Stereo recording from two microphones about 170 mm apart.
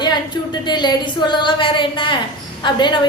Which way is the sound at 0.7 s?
25° left (ahead or behind).